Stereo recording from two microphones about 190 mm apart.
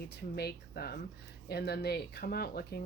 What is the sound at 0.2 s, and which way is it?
Speech, 60° left (ahead or behind).